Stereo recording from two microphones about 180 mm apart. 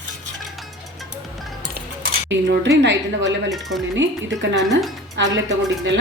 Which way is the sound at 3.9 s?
80° right.